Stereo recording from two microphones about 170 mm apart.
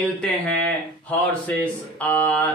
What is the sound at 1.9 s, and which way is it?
Speech, 10° left (ahead or behind).